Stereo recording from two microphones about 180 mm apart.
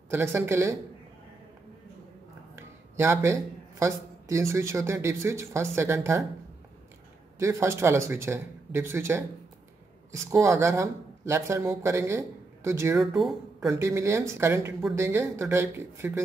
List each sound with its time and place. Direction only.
0.1 s speech: 15° right (ahead or behind)
2.5 s a sound: 15° right (ahead or behind)
3.8 s speech: 15° right (ahead or behind)
7.3 s speech: 15° right (ahead or behind)
13.0 s speech: centre (ahead or behind)
13.7 s speech: 15° right (ahead or behind)